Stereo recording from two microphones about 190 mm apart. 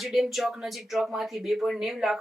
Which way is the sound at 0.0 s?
Centre (ahead or behind).